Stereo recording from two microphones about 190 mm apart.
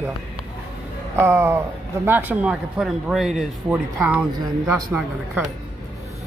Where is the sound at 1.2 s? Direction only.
15° right (ahead or behind).